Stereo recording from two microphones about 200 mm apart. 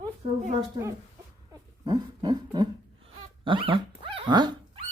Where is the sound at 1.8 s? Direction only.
20° right (ahead or behind).